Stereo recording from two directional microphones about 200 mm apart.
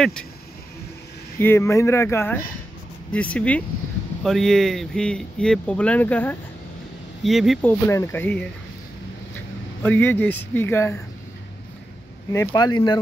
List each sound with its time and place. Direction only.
1.4 s speech: 15° left (ahead or behind)
7.8 s speech: 15° left (ahead or behind)
9.8 s speech: 10° left (ahead or behind)
12.3 s speech: 15° left (ahead or behind)